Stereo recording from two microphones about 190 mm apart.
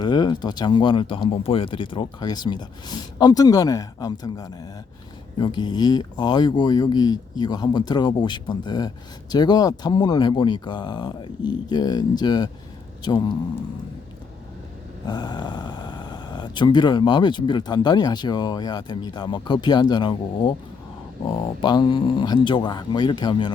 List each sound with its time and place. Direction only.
0.0 s speech: 20° left (ahead or behind)
15.0 s speech: 20° left (ahead or behind)